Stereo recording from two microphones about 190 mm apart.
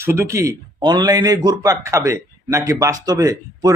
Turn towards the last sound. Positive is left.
turn(degrees=-20)  # may be behind; listen again after turning